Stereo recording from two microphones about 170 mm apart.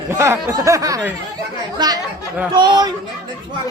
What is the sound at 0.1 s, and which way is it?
Speech, 15° right (ahead or behind).